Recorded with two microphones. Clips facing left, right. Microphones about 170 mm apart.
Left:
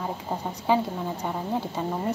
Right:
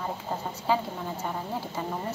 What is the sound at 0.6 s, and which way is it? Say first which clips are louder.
Speech: left 4 dB; 15° left (ahead or behind).